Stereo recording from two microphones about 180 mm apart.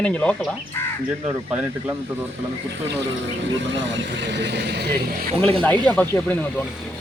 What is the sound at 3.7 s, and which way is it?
Speech, 85° right.